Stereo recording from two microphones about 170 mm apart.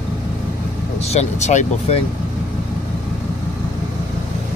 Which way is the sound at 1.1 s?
40° left (ahead or behind).